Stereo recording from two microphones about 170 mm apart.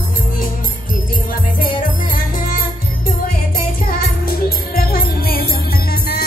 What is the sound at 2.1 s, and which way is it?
Music, 55° left (ahead or behind).